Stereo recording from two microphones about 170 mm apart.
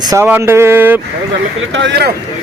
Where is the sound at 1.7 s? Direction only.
90° right.